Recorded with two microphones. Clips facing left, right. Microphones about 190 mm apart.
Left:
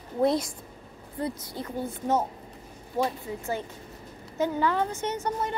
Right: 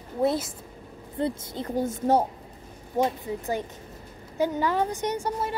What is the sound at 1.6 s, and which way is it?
Speech, 40° right (ahead or behind).